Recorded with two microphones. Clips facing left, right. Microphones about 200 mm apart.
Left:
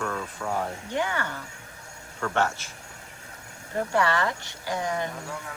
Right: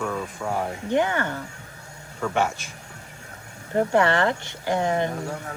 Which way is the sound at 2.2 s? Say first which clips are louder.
Right 2 dB; 10° right (ahead or behind).